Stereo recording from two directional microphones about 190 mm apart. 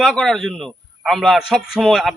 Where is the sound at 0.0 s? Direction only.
5° left (ahead or behind).